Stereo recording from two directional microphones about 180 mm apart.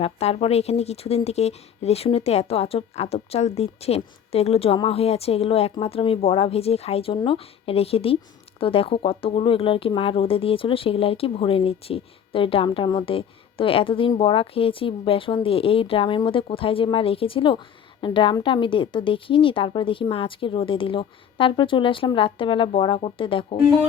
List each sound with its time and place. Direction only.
0.0 s a woman's voice: 35° left (ahead or behind)